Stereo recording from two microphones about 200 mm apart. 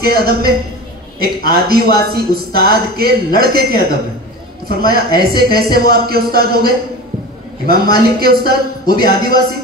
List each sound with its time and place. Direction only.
0.0 s a man's voice: 50° right (ahead or behind)